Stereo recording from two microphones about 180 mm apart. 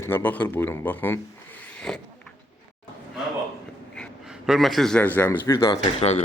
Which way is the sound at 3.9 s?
Centre (ahead or behind).